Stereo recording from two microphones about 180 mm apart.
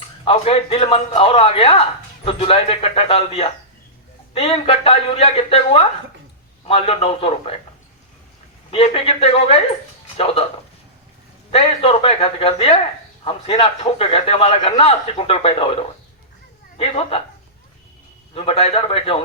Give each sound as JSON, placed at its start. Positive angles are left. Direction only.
{"t": 0.3, "sound": "a man's voice", "side_deg": 35}
{"t": 8.7, "sound": "a man's voice", "side_deg": 35}
{"t": 11.5, "sound": "a man's voice", "side_deg": 35}
{"t": 18.3, "sound": "a man's voice", "side_deg": 35}